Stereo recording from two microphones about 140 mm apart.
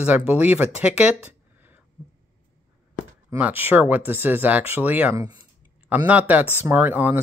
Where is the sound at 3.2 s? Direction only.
15° right (ahead or behind).